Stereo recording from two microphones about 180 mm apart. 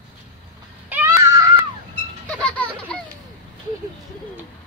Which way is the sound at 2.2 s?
5° left (ahead or behind).